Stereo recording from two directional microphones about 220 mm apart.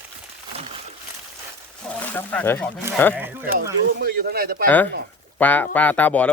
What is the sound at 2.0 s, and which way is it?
Speech, 10° left (ahead or behind).